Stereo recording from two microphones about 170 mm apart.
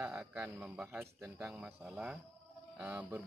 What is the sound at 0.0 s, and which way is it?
Speech, 10° right (ahead or behind).